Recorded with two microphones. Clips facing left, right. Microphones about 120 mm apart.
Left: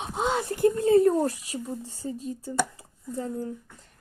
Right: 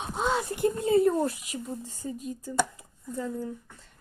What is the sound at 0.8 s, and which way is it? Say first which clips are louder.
Speech: left 2 dB; 45° left (ahead or behind).